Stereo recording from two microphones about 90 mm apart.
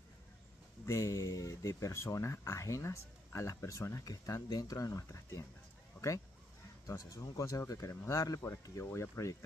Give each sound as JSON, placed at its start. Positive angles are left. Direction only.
{"t": 0.8, "sound": "speech", "side_deg": 35}
{"t": 5.9, "sound": "bow-wow", "side_deg": 35}
{"t": 6.9, "sound": "speech", "side_deg": 35}